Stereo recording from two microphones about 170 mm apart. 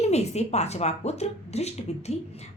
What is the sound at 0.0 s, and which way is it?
Speech, 40° left (ahead or behind).